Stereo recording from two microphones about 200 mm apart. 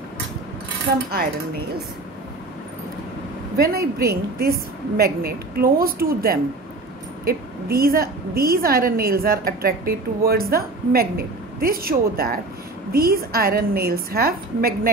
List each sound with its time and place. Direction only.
3.5 s a woman's voice: 50° right (ahead or behind)